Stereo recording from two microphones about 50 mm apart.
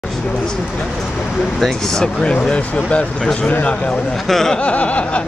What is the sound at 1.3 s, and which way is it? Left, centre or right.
Speech, centre.